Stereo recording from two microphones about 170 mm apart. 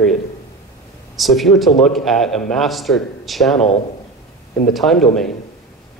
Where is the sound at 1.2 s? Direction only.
Centre (ahead or behind).